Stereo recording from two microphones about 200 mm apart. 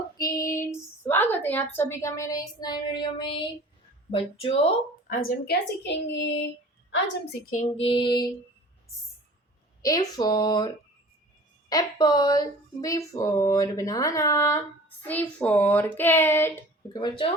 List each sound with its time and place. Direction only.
0.2 s speech: 15° left (ahead or behind)
5.0 s a woman's voice: 45° left (ahead or behind); by 6.4 s 60° left (ahead or behind)
7.5 s speech: 30° left (ahead or behind)
9.8 s speech: 20° left (ahead or behind)
11.7 s speech: 20° left (ahead or behind)